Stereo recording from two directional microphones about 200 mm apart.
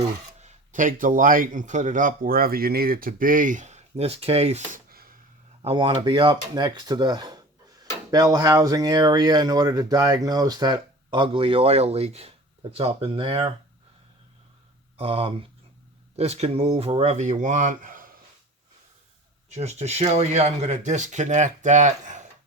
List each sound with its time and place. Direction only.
0.3 s a man's voice: 35° right (ahead or behind)
4.9 s a sound: 50° right (ahead or behind)
5.6 s speech: 25° right (ahead or behind)
14.9 s a man's voice: 30° right (ahead or behind)
19.5 s a man's voice: 35° right (ahead or behind)